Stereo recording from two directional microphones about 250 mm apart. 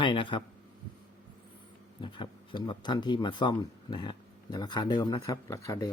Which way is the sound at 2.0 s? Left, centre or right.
Centre.